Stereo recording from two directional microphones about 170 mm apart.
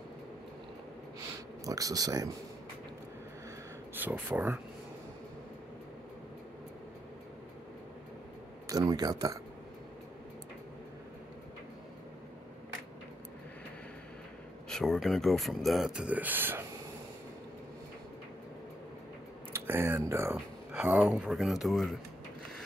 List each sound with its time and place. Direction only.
1.6 s speech: 20° right (ahead or behind)
4.0 s speech: 10° right (ahead or behind)
8.6 s speech: 20° right (ahead or behind)
14.7 s speech: centre (ahead or behind)
19.5 s speech: 15° right (ahead or behind)